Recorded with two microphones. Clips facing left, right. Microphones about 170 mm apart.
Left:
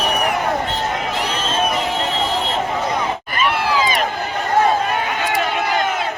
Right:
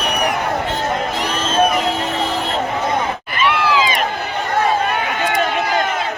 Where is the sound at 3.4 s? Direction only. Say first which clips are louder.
Right 2 dB; 45° left (ahead or behind).